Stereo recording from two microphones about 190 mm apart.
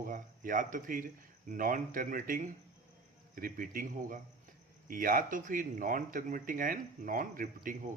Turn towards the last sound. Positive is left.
turn(degrees=-45)  # may be behind; listen again after turning